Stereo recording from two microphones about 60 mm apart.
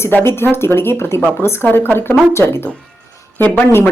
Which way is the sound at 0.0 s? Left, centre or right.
Left.